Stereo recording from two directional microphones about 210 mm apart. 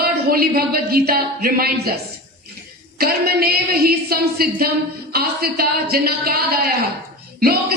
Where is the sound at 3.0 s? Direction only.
45° right (ahead or behind).